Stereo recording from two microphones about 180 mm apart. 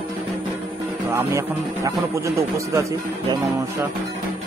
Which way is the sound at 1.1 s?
15° right (ahead or behind).